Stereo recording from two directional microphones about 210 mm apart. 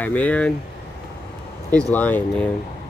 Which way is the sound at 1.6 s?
10° left (ahead or behind).